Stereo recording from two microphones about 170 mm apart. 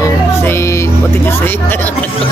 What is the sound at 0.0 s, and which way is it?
Music, 15° left (ahead or behind).